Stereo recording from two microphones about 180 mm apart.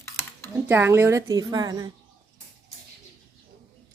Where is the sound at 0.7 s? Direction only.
10° right (ahead or behind).